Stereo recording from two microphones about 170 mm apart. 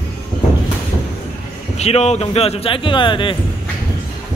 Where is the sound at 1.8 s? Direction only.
40° left (ahead or behind).